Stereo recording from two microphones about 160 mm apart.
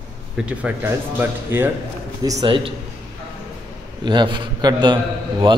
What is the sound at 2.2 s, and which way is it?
Speech, 25° right (ahead or behind).